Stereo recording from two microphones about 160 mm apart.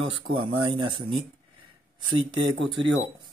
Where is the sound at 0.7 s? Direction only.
30° right (ahead or behind).